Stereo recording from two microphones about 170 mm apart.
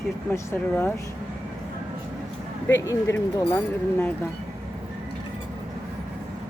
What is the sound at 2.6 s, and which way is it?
Speech, 15° left (ahead or behind).